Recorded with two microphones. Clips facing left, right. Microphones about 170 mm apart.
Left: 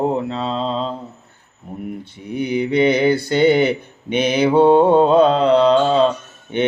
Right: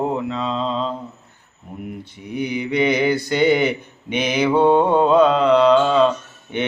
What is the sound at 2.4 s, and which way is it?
Mantra, 30° left (ahead or behind).